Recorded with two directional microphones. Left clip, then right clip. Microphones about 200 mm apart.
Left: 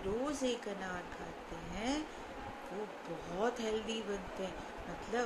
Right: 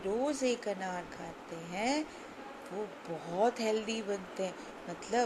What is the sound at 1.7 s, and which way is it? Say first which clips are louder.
Speech: right 6 dB; 25° right (ahead or behind).